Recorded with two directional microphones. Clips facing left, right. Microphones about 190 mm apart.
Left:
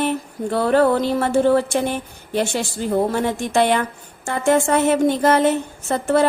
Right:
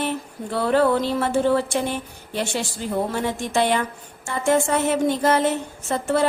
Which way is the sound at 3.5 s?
55° left (ahead or behind).